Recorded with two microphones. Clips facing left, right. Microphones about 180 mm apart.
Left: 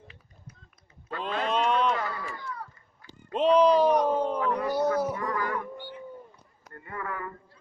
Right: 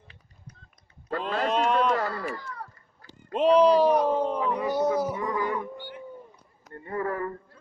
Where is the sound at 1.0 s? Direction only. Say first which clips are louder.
Right 3 dB; 40° right (ahead or behind).